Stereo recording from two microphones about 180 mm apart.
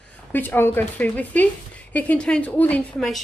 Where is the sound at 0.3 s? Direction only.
10° left (ahead or behind).